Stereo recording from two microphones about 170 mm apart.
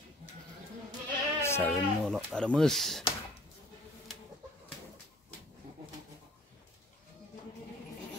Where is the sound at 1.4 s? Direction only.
15° left (ahead or behind).